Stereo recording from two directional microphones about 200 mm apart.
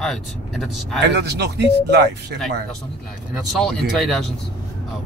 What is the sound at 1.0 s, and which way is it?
Speech, 55° right (ahead or behind).